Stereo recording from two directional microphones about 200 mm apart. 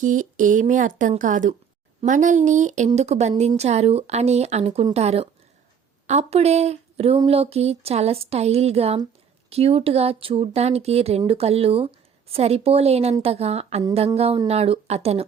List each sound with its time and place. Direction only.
0.0 s speech: 40° right (ahead or behind)